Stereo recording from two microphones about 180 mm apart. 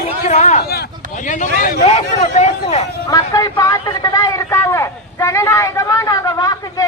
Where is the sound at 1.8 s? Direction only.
35° left (ahead or behind).